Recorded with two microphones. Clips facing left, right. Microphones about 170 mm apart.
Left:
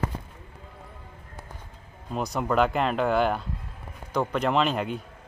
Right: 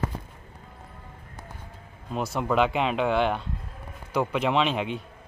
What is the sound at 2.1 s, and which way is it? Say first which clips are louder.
Speech: even; centre (ahead or behind).